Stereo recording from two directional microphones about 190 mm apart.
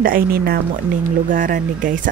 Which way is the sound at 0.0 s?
50° right (ahead or behind).